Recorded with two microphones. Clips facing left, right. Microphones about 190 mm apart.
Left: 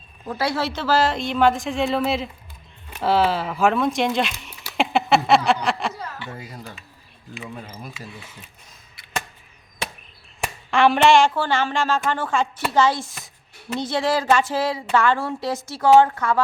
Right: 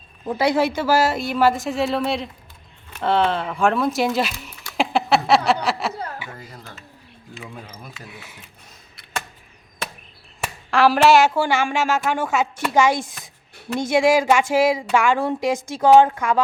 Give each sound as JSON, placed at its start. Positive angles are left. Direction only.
{"t": 0.3, "sound": "a woman's voice", "side_deg": -15}
{"t": 5.9, "sound": "chuckle", "side_deg": -55}
{"t": 7.5, "sound": "speech", "side_deg": 0}
{"t": 10.7, "sound": "a woman's voice", "side_deg": 0}